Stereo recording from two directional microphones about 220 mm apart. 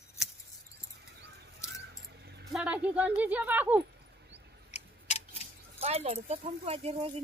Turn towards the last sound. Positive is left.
turn(degrees=-25)  # may be behind; listen again after turning